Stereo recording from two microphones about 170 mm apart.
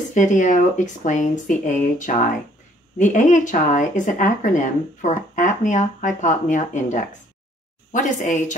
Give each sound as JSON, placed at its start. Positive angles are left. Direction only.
{"t": 0.1, "sound": "speech", "side_deg": 50}